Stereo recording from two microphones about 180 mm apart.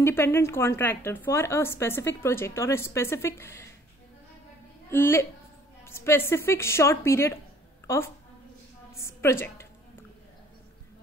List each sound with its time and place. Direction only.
0.0 s a woman's voice: 15° left (ahead or behind)
4.9 s a woman's voice: 15° left (ahead or behind)
7.8 s a sound: 15° left (ahead or behind)